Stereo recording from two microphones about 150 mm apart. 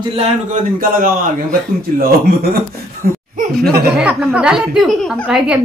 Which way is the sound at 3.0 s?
90° right.